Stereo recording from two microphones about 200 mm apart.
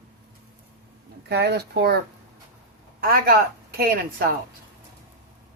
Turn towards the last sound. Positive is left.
turn(degrees=-45)  # may be behind; listen again after turning